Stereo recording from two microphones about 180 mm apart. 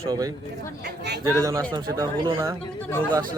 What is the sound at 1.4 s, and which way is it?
Speech, 15° right (ahead or behind).